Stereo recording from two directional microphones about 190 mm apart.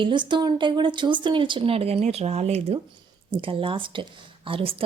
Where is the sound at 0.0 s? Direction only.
25° right (ahead or behind).